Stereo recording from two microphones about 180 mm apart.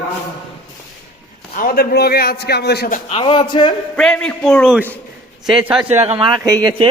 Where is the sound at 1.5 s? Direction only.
55° left (ahead or behind).